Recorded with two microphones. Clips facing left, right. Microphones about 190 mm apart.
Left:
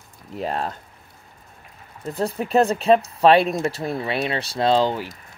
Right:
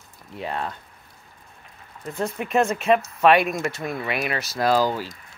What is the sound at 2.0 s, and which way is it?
Speech, 35° left (ahead or behind).